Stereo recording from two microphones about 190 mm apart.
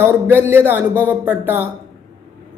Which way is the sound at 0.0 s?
10° right (ahead or behind).